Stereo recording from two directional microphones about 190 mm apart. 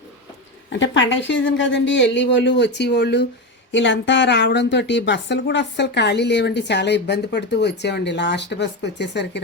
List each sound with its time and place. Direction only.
0.7 s a woman's voice: 75° left (ahead or behind)
3.7 s speech: 75° left (ahead or behind)